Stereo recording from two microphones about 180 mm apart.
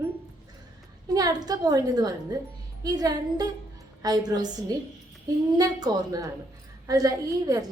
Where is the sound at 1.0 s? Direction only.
20° right (ahead or behind).